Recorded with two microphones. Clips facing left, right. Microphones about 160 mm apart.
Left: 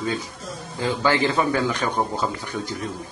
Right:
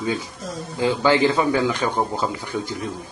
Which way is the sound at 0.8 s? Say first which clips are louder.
Right 4 dB; 15° right (ahead or behind).